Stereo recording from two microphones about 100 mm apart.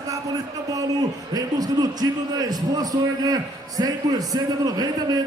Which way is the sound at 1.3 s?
40° right (ahead or behind).